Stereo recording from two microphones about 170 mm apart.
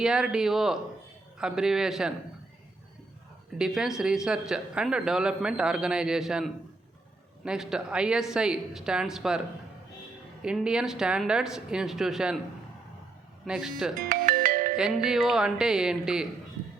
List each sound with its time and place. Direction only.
0.0 s a man's voice: 5° right (ahead or behind)
3.6 s a man's voice: 5° right (ahead or behind)
10.4 s a man's voice: 5° right (ahead or behind)
13.4 s a man's voice: centre (ahead or behind)
14.0 s music: 55° right (ahead or behind)
14.8 s a man's voice: 5° right (ahead or behind)